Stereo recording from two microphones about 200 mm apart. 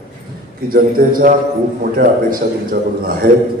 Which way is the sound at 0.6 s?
45° right (ahead or behind).